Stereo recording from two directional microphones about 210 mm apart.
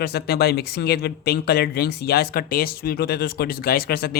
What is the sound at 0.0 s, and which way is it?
Speech, 50° left (ahead or behind).